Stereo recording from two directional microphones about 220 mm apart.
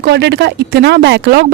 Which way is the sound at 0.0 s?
50° right (ahead or behind).